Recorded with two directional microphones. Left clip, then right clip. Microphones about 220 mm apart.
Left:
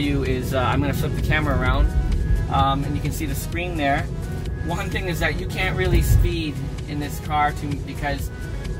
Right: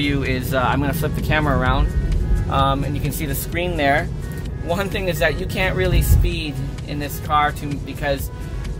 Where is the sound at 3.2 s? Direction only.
55° right (ahead or behind).